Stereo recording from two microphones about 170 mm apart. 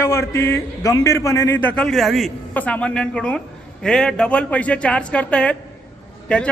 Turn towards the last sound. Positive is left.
turn(degrees=5)  # may be behind; listen again after turning